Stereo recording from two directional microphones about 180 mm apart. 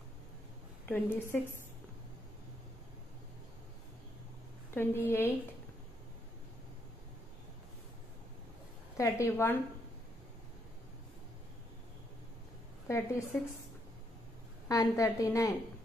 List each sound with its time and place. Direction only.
0.8 s a woman's voice: 10° left (ahead or behind)
4.7 s a woman's voice: 10° left (ahead or behind)
8.9 s a woman's voice: 15° left (ahead or behind)
12.8 s a woman's voice: 15° left (ahead or behind)
14.7 s a woman's voice: 20° left (ahead or behind)